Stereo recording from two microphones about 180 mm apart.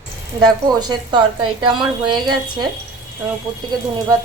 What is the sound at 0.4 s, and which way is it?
A woman's voice, 25° right (ahead or behind).